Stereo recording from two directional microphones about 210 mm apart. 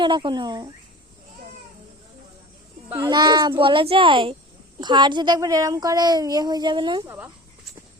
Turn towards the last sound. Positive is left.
turn(degrees=-20)  # may be behind; listen again after turning